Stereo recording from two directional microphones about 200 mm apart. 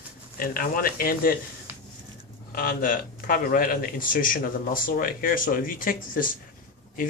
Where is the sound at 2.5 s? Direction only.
45° left (ahead or behind).